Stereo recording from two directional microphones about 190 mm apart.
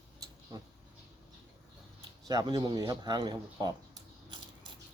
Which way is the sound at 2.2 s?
20° right (ahead or behind).